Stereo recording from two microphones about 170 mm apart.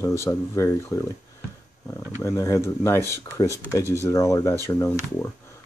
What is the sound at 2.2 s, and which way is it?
Speech, 20° left (ahead or behind).